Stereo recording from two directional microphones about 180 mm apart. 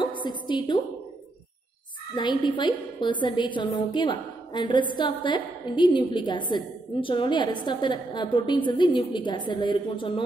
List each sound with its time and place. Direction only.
0.0 s a woman's voice: 25° left (ahead or behind)
2.1 s a woman's voice: 25° left (ahead or behind)